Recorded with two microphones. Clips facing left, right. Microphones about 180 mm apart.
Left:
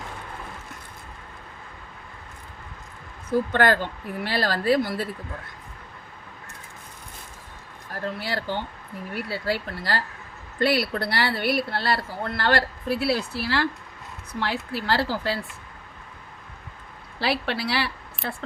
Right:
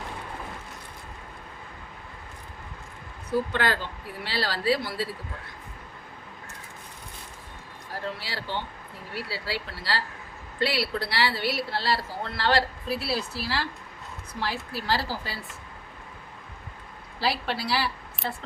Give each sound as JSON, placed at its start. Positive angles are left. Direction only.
{"t": 3.5, "sound": "speech", "side_deg": 50}
{"t": 8.2, "sound": "speech", "side_deg": 50}
{"t": 17.2, "sound": "speech", "side_deg": 65}
{"t": 18.2, "sound": "a sound", "side_deg": 0}